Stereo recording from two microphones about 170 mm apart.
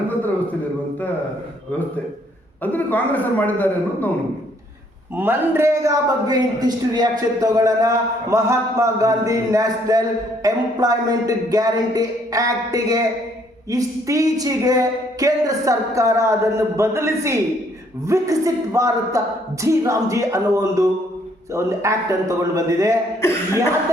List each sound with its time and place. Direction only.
2.7 s a man's voice: 10° left (ahead or behind)
5.1 s a man's voice: 10° right (ahead or behind)